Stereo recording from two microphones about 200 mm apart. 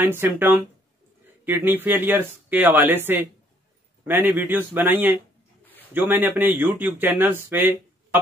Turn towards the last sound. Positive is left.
turn(degrees=-10)  # may be behind; listen again after turning